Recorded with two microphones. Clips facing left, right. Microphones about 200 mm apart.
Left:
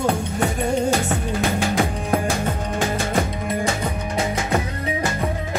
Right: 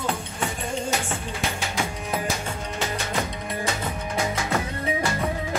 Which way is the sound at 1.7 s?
55° left (ahead or behind).